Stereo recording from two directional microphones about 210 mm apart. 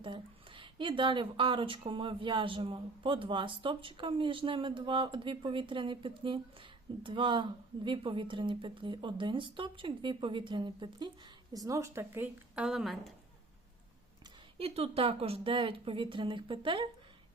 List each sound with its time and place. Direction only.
0.0 s a woman's voice: 25° right (ahead or behind); by 13.1 s centre (ahead or behind)
14.6 s a woman's voice: 30° right (ahead or behind)